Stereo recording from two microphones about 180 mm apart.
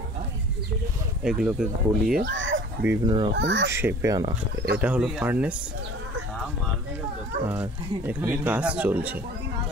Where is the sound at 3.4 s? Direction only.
85° right.